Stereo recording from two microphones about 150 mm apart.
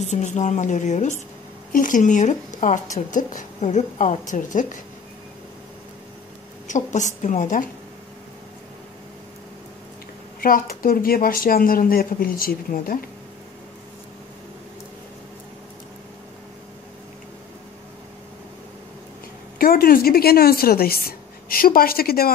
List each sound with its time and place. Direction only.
0.1 s a woman's voice: 50° left (ahead or behind)
6.7 s speech: 55° left (ahead or behind)
10.4 s speech: 70° left (ahead or behind)
19.6 s a woman's voice: 75° left (ahead or behind); by 22.3 s 90° left